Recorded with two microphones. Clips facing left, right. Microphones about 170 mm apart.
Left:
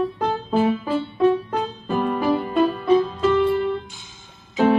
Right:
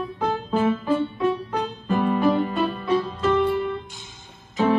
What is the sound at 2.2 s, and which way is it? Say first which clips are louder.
Music: left 1 dB; 5° left (ahead or behind).